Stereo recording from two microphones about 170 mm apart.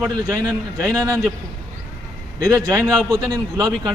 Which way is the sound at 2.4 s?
20° right (ahead or behind).